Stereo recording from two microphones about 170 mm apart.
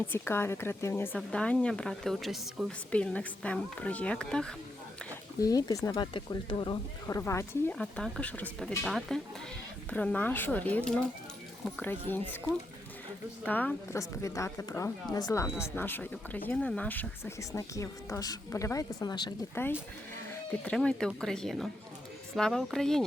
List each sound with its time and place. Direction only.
0.0 s speech: 15° left (ahead or behind)
5.4 s speech: 20° left (ahead or behind)
7.2 s speech: 15° left (ahead or behind)
7.8 s speech: 5° left (ahead or behind)
13.4 s speech: 10° left (ahead or behind); by 19.3 s 25° left (ahead or behind)
19.6 s speech: 15° left (ahead or behind)